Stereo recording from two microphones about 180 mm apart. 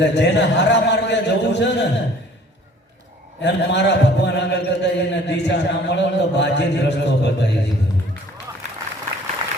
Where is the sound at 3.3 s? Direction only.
75° left (ahead or behind).